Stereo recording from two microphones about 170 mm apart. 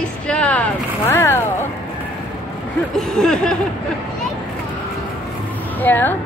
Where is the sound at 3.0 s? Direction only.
5° left (ahead or behind).